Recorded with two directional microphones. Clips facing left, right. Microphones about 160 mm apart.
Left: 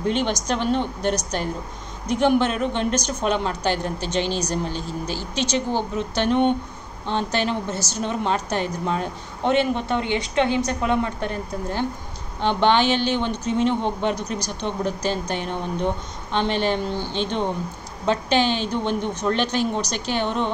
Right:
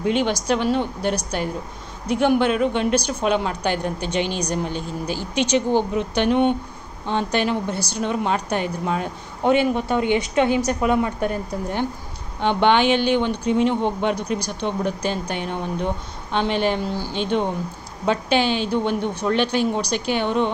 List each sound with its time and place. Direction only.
0.0 s speech: 10° right (ahead or behind)
12.4 s speech: 10° right (ahead or behind)
14.1 s speech: 55° right (ahead or behind)
14.6 s speech: 10° right (ahead or behind)